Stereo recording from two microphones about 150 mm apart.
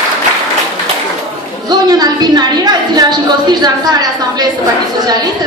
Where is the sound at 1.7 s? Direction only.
25° right (ahead or behind).